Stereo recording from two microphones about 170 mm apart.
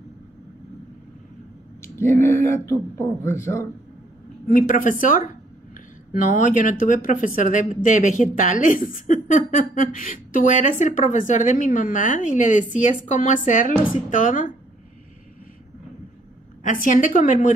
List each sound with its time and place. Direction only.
1.8 s a man's voice: 15° left (ahead or behind)
4.5 s speech: 55° left (ahead or behind)
16.6 s speech: 50° left (ahead or behind)